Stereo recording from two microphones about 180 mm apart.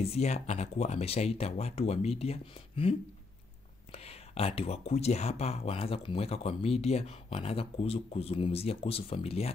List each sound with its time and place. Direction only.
0.0 s speech: 35° left (ahead or behind)